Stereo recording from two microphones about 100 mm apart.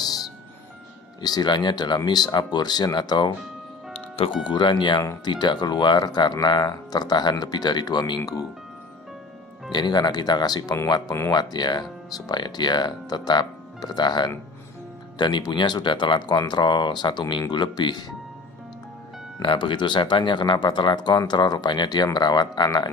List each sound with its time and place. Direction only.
0.0 s music: 40° left (ahead or behind)
1.2 s speech: 45° left (ahead or behind)
4.5 s speech: 50° left (ahead or behind)
9.7 s speech: 45° left (ahead or behind)
19.4 s speech: 55° left (ahead or behind)